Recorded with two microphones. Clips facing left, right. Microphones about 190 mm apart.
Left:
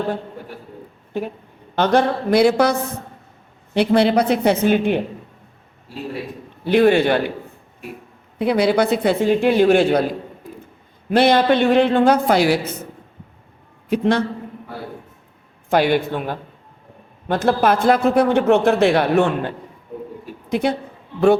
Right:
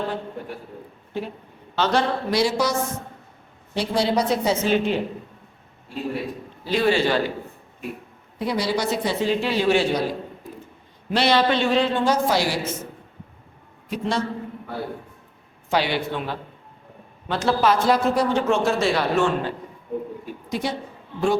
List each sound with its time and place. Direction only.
1.7 s a man's voice: 55° left (ahead or behind)
6.7 s a man's voice: 55° left (ahead or behind)
8.4 s a man's voice: 60° left (ahead or behind)
11.1 s a man's voice: 50° left (ahead or behind)
13.9 s a man's voice: 60° left (ahead or behind)
15.7 s a woman's voice: 50° left (ahead or behind)